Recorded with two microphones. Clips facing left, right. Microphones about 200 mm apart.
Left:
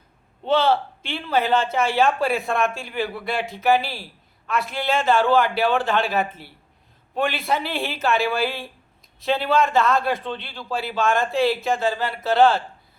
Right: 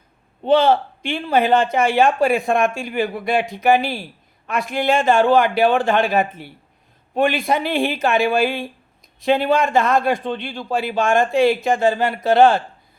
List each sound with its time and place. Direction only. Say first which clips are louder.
0.4 s speech: right 5 dB; 15° right (ahead or behind)